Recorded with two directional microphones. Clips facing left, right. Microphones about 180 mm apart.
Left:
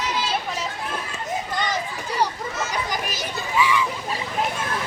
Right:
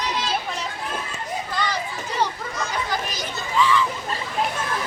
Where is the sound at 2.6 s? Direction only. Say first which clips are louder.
Right 1 dB; 5° left (ahead or behind).